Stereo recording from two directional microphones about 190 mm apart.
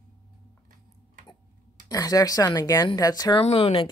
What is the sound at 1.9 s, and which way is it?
Speech, 20° left (ahead or behind).